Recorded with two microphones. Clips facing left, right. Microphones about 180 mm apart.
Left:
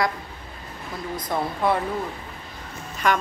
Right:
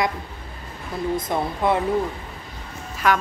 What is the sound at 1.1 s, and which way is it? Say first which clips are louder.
Speech: even; 20° right (ahead or behind).